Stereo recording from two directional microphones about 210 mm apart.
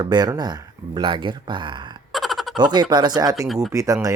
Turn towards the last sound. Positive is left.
turn(degrees=-15)  # may be behind; listen again after turning